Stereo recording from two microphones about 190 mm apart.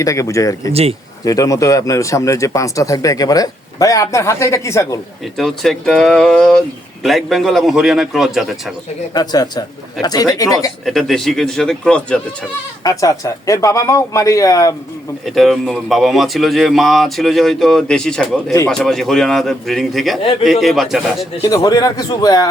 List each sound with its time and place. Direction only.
0.0 s speech: 15° left (ahead or behind)
0.7 s speech: 30° right (ahead or behind)
1.2 s speech: 20° left (ahead or behind)
5.4 s speech: centre (ahead or behind)
9.1 s speech: 20° left (ahead or behind)
10.8 s speech: centre (ahead or behind)
12.8 s speech: 20° left (ahead or behind)
15.4 s speech: centre (ahead or behind)
21.4 s speech: 20° left (ahead or behind)